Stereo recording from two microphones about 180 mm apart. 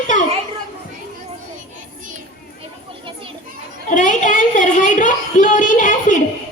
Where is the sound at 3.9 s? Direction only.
45° left (ahead or behind).